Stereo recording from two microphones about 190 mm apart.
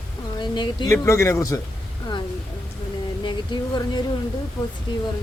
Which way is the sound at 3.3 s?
25° left (ahead or behind).